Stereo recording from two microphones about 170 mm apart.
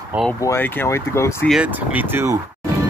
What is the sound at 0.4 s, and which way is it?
Speech, 15° left (ahead or behind).